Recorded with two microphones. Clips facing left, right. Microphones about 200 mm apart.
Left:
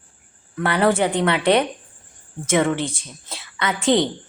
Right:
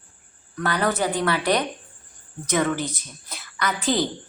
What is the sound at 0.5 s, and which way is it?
A woman's voice, 25° left (ahead or behind).